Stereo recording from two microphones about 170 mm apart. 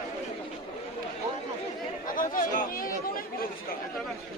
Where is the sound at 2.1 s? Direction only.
50° left (ahead or behind).